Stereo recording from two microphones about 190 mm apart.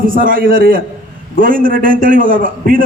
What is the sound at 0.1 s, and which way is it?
A man's voice, 45° right (ahead or behind).